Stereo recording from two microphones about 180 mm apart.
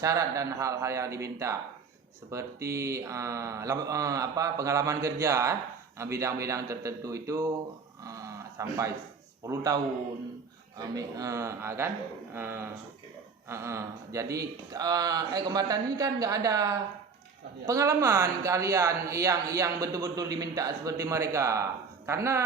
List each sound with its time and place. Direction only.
0.0 s speech: 20° right (ahead or behind)
8.0 s a sound: 20° right (ahead or behind)
9.5 s speech: 20° right (ahead or behind)